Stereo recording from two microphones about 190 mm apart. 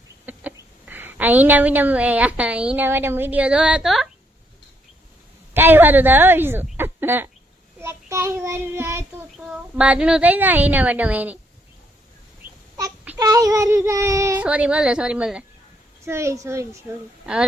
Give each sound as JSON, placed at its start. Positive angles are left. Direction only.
{"t": 0.3, "sound": "a woman's voice", "side_deg": -10}
{"t": 5.5, "sound": "child singing", "side_deg": -10}
{"t": 12.7, "sound": "child singing", "side_deg": -20}